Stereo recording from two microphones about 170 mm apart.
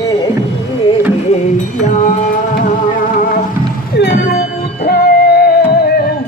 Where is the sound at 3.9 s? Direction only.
75° left (ahead or behind).